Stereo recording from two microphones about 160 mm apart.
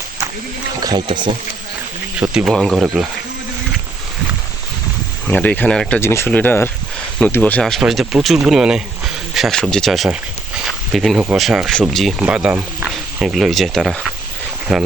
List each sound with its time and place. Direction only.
0.8 s speech: 25° right (ahead or behind)
2.1 s speech: 5° right (ahead or behind)
5.3 s speech: 10° left (ahead or behind)
6.0 s speech: 15° left (ahead or behind); by 14.8 s centre (ahead or behind)